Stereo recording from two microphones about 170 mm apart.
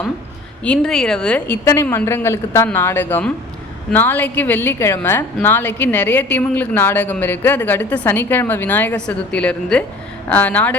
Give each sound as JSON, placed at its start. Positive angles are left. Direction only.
{"t": 0.6, "sound": "speech", "side_deg": 5}
{"t": 1.6, "sound": "a woman's voice", "side_deg": 15}